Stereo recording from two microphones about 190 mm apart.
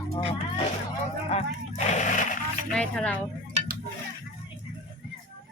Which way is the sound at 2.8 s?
5° left (ahead or behind).